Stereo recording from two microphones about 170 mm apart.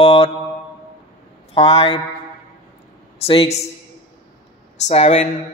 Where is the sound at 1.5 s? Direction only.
35° left (ahead or behind).